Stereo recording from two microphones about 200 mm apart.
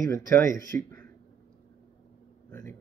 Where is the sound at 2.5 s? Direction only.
5° left (ahead or behind).